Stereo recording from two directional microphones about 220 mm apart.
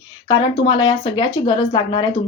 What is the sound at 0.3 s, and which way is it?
Speech, 20° left (ahead or behind).